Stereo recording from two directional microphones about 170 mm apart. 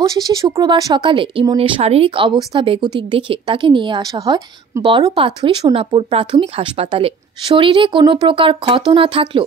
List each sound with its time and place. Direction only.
0.0 s speech: 20° right (ahead or behind)